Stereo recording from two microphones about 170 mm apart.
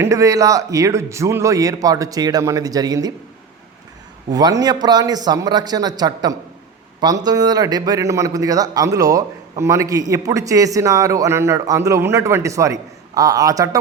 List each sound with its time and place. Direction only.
0.0 s speech: 20° right (ahead or behind)
4.3 s speech: 20° right (ahead or behind)